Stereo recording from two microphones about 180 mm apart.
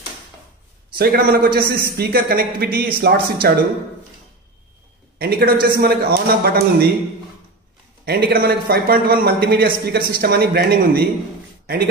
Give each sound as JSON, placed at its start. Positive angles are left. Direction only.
{"t": 0.9, "sound": "a man's voice", "side_deg": -60}
{"t": 5.2, "sound": "a man's voice", "side_deg": -60}
{"t": 8.0, "sound": "a man's voice", "side_deg": -55}